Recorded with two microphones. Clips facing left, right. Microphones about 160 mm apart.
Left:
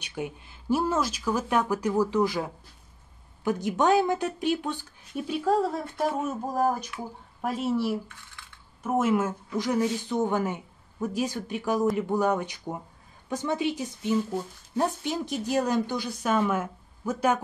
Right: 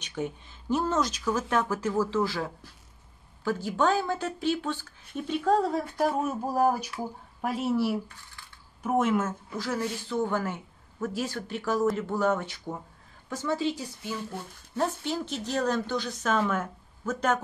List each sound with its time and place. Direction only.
0.0 s a woman's voice: 10° left (ahead or behind)